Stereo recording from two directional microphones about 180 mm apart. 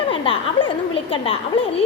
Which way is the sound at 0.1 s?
30° left (ahead or behind).